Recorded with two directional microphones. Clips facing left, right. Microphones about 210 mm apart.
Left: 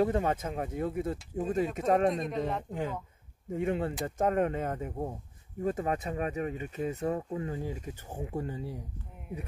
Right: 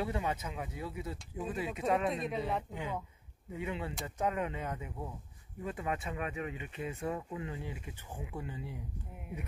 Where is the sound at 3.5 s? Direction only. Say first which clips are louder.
Left 8 dB; 50° left (ahead or behind).